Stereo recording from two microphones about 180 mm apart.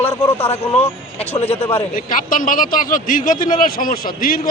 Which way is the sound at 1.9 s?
50° left (ahead or behind).